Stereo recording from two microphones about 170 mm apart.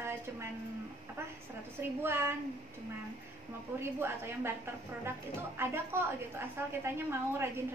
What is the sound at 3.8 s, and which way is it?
Speech, 15° right (ahead or behind).